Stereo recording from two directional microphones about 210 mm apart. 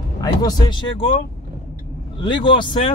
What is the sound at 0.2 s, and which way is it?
Speech, 20° left (ahead or behind).